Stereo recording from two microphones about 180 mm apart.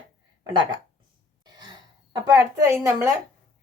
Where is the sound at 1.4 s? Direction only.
25° right (ahead or behind).